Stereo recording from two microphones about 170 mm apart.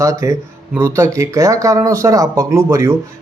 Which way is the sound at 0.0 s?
20° right (ahead or behind).